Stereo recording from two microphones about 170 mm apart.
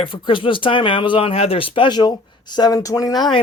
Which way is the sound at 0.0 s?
30° left (ahead or behind).